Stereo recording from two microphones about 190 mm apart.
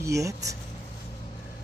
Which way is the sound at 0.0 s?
15° right (ahead or behind).